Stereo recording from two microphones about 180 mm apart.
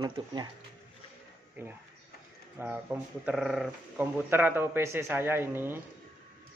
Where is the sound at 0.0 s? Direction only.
25° right (ahead or behind).